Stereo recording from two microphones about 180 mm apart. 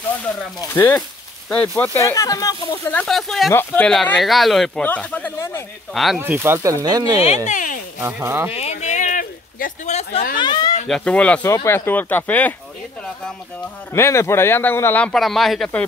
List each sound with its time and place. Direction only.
0.6 s speech: 10° left (ahead or behind)
6.1 s speech: 10° right (ahead or behind)
7.4 s a sound: 45° left (ahead or behind)
8.0 s speech: 15° right (ahead or behind)
8.5 s a sound: 35° left (ahead or behind)
10.3 s speech: 25° left (ahead or behind)
10.9 s speech: 5° left (ahead or behind)
13.9 s speech: 15° left (ahead or behind)